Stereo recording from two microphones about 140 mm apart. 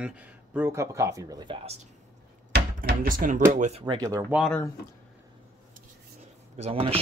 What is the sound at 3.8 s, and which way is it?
Speech, 25° right (ahead or behind).